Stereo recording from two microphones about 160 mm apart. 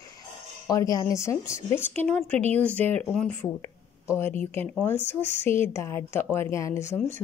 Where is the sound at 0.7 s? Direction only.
20° left (ahead or behind).